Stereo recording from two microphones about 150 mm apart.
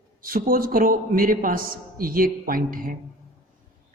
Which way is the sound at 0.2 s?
75° right (ahead or behind).